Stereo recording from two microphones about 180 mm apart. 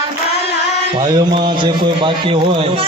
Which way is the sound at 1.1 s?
25° right (ahead or behind).